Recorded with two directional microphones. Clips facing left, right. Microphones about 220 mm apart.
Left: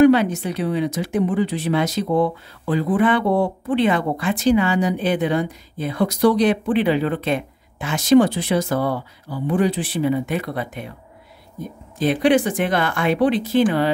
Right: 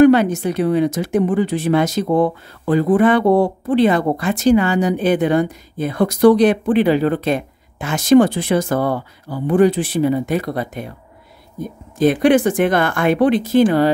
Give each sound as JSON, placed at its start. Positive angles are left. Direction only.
{"t": 0.0, "sound": "speech", "side_deg": -45}
{"t": 12.0, "sound": "speech", "side_deg": -50}